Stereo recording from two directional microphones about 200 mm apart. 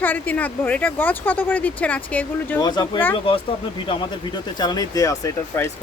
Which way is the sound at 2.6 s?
20° left (ahead or behind).